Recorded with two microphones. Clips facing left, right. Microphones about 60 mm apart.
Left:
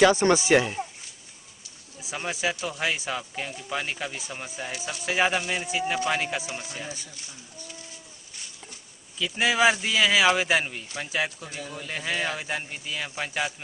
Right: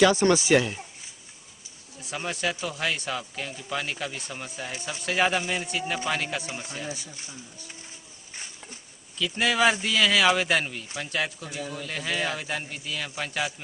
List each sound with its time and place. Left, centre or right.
0.0 s speech: centre
2.0 s speech: centre
6.9 s speech: centre
9.2 s speech: centre